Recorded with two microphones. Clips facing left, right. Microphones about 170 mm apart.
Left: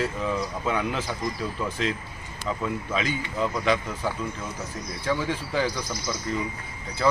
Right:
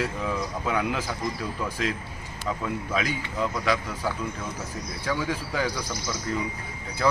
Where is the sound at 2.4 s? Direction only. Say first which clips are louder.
Left 1 dB; 5° right (ahead or behind).